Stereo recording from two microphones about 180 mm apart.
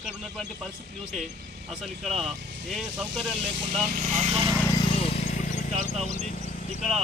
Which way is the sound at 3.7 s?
45° right (ahead or behind).